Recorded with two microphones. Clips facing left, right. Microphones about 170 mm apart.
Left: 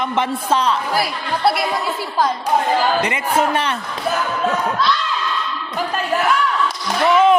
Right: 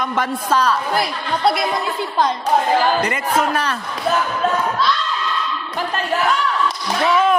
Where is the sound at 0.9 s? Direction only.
5° left (ahead or behind).